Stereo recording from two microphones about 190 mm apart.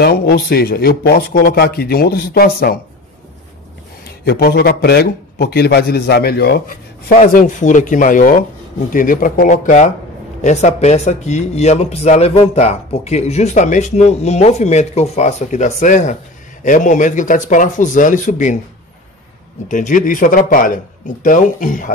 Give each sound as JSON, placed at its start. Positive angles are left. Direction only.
{"t": 0.0, "sound": "speech", "side_deg": 55}
{"t": 4.0, "sound": "speech", "side_deg": 55}
{"t": 7.2, "sound": "speech", "side_deg": 40}
{"t": 19.7, "sound": "speech", "side_deg": 40}